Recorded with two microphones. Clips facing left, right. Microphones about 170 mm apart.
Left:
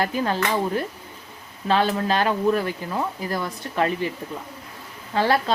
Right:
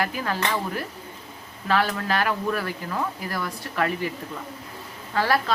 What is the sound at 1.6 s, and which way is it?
Speech, 25° left (ahead or behind).